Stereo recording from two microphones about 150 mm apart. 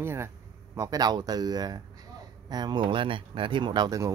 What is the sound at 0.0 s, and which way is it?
Speech, 15° right (ahead or behind).